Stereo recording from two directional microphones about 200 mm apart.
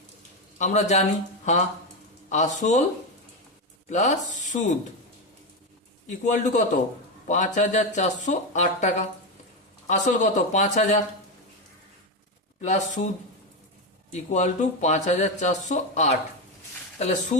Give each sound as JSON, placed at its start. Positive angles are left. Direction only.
{"t": 0.6, "sound": "speech", "side_deg": 35}
{"t": 3.8, "sound": "speech", "side_deg": 35}
{"t": 6.1, "sound": "speech", "side_deg": 35}
{"t": 12.6, "sound": "speech", "side_deg": 35}
{"t": 14.1, "sound": "speech", "side_deg": 35}